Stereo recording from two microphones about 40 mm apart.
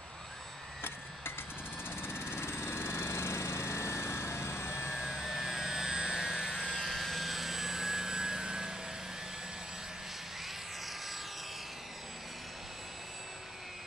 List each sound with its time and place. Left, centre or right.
1.9 s vehicle: left
2.3 s helicopter: left
4.9 s jet engine: centre
6.8 s vehicle: centre